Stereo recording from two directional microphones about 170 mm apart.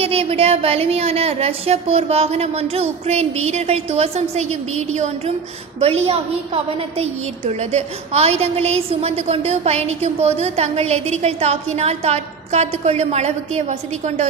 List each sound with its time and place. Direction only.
0.0 s a woman's voice: 35° right (ahead or behind)